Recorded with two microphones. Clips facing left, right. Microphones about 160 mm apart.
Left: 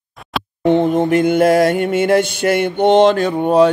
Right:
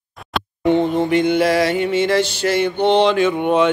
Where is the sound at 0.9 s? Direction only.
45° left (ahead or behind).